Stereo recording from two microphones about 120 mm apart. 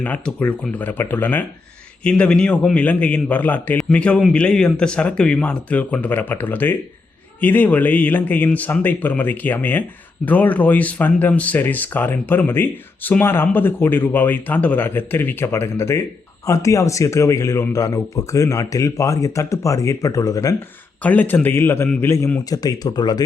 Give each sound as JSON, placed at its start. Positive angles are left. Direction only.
{"t": 0.0, "sound": "speech", "side_deg": 15}
{"t": 21.0, "sound": "speech", "side_deg": 15}